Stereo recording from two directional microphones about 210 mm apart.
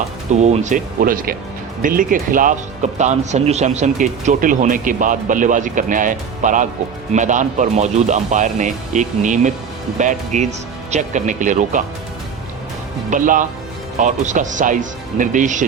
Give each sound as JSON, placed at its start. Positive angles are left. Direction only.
{"t": 0.3, "sound": "speech", "side_deg": -30}
{"t": 13.1, "sound": "speech", "side_deg": -40}